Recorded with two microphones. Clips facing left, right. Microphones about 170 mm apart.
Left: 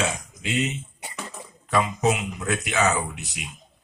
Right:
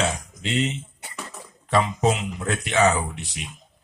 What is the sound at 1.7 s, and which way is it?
Speech, 30° right (ahead or behind).